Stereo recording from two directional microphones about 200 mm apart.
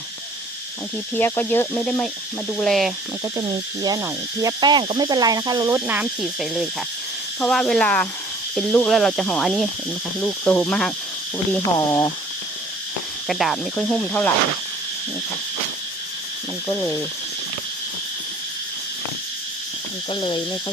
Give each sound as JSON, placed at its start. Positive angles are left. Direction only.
{"t": 1.1, "sound": "speech", "side_deg": 10}
{"t": 3.8, "sound": "cricket", "side_deg": -15}
{"t": 5.7, "sound": "speech", "side_deg": -10}
{"t": 11.9, "sound": "speech", "side_deg": 20}
{"t": 13.2, "sound": "speech", "side_deg": 0}
{"t": 16.6, "sound": "speech", "side_deg": 15}
{"t": 20.1, "sound": "cricket", "side_deg": 25}